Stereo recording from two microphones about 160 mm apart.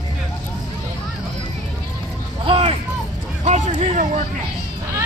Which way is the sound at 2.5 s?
40° right (ahead or behind).